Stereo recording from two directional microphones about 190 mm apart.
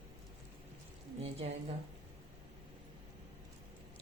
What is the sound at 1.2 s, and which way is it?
Speech, 30° right (ahead or behind).